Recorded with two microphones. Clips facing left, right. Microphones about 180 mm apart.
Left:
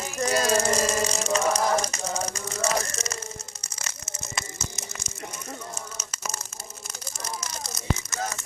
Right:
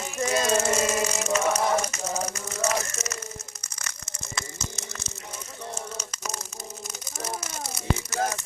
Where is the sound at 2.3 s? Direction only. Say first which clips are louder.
Even; 35° left (ahead or behind).